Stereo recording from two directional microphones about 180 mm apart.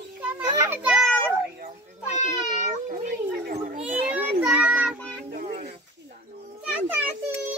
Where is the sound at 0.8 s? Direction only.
Centre (ahead or behind).